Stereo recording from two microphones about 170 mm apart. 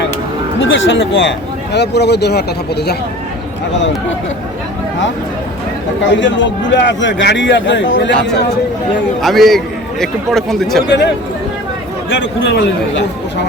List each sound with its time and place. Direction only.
0.6 s a man's voice: 90° left; by 2.9 s 75° left (ahead or behind)
6.1 s a man's voice: 90° left
9.2 s speech: centre (ahead or behind)
10.8 s speech: 85° left
12.5 s a man's voice: 90° left